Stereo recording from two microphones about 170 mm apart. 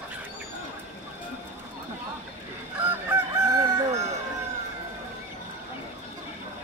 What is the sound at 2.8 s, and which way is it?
Chicken, 10° right (ahead or behind).